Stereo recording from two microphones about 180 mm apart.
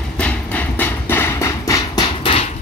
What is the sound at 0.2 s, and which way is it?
Music, 10° left (ahead or behind).